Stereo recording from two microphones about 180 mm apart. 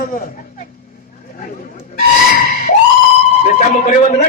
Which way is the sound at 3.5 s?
45° left (ahead or behind).